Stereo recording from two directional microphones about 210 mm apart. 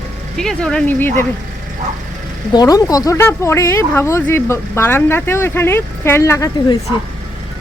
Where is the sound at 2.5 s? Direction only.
20° left (ahead or behind).